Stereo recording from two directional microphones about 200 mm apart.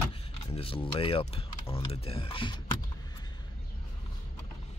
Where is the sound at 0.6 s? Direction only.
25° left (ahead or behind).